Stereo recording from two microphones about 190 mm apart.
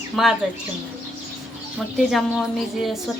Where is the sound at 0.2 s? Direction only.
Centre (ahead or behind).